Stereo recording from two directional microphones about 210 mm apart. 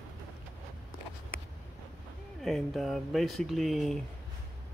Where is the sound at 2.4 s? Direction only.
Centre (ahead or behind).